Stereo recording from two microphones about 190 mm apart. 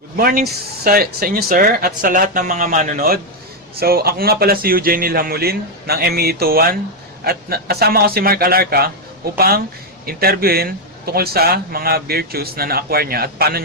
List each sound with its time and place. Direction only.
0.2 s a man's voice: 50° right (ahead or behind)